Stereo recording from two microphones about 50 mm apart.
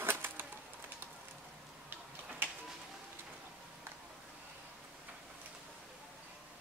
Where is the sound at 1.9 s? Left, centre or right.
Right.